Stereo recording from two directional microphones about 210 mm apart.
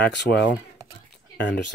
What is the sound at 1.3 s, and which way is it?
Speech, 55° left (ahead or behind).